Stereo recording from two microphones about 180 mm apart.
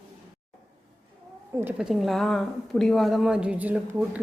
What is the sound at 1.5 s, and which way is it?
A woman's voice, 5° right (ahead or behind).